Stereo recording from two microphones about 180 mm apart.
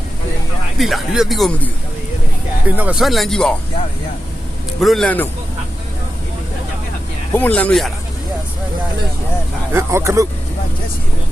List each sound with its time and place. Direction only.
0.8 s speech: centre (ahead or behind)
2.6 s speech: 10° right (ahead or behind)
4.8 s speech: centre (ahead or behind)
7.3 s speech: 10° left (ahead or behind)
9.7 s speech: 15° right (ahead or behind)